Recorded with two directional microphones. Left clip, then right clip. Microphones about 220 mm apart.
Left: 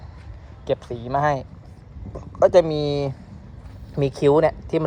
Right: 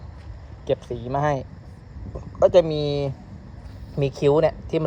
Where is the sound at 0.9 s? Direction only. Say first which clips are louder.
Left 2 dB; 15° left (ahead or behind).